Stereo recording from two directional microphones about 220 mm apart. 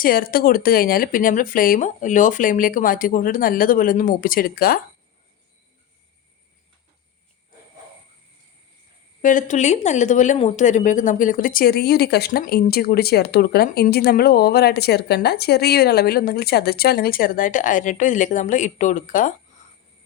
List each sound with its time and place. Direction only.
0.0 s speech: 40° left (ahead or behind)
9.2 s speech: 35° left (ahead or behind)